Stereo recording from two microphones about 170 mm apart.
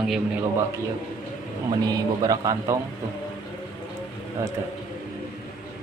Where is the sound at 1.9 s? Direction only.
20° right (ahead or behind).